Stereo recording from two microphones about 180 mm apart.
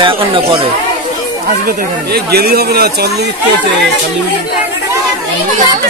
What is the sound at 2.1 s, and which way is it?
Speech, 60° right (ahead or behind).